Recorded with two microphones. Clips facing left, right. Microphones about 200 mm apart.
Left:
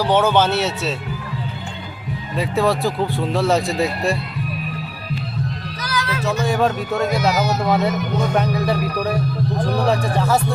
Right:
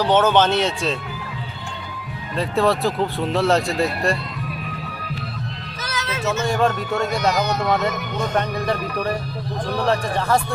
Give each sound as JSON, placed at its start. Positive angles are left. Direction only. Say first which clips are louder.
{"t": 0.0, "sound": "speech", "louder": "even", "side_deg": 10}
{"t": 2.3, "sound": "speech", "louder": "even", "side_deg": 5}
{"t": 5.8, "sound": "a sound", "louder": "left 3 dB", "side_deg": -20}
{"t": 6.4, "sound": "speech", "louder": "left 1 dB", "side_deg": 5}